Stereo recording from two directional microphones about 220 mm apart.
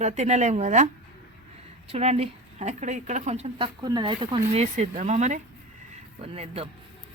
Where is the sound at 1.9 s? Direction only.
30° right (ahead or behind).